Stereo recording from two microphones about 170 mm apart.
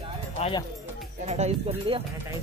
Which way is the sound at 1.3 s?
35° right (ahead or behind).